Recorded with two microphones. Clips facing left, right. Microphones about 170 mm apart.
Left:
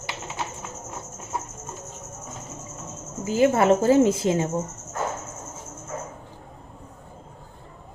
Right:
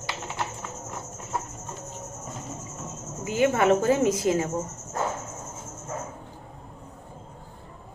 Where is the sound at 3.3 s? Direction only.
35° left (ahead or behind).